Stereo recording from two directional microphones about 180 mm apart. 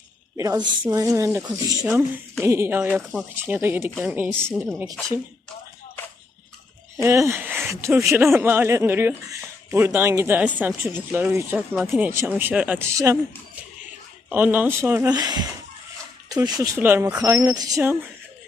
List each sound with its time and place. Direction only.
0.3 s speech: 20° right (ahead or behind)
6.9 s speech: 15° right (ahead or behind)
14.3 s speech: 10° right (ahead or behind)